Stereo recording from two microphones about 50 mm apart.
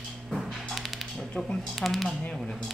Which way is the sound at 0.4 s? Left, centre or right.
Centre.